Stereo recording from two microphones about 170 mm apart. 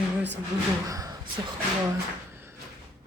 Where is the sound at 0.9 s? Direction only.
20° right (ahead or behind).